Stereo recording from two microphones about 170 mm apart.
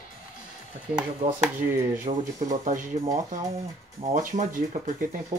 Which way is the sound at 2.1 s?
40° right (ahead or behind).